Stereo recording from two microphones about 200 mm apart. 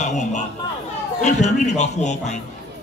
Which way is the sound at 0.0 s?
35° left (ahead or behind).